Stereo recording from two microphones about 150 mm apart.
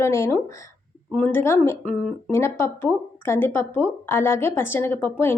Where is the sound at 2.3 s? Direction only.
15° left (ahead or behind).